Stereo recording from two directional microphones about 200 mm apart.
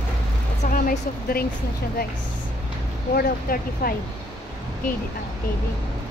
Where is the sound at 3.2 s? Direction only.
45° left (ahead or behind).